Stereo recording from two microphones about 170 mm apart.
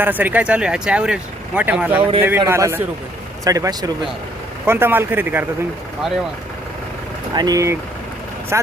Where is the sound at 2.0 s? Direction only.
30° right (ahead or behind).